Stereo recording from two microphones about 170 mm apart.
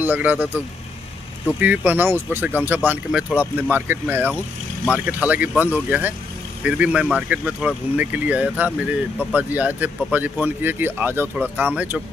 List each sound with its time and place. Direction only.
0.0 s speech: 10° right (ahead or behind)
1.6 s speech: 10° right (ahead or behind)